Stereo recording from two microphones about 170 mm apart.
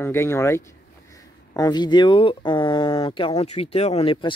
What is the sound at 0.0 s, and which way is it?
A man's voice, 15° left (ahead or behind).